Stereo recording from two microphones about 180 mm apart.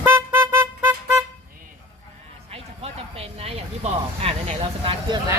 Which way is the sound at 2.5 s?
35° right (ahead or behind).